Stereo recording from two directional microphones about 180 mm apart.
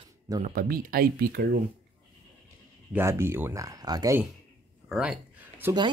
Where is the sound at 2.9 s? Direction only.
15° right (ahead or behind).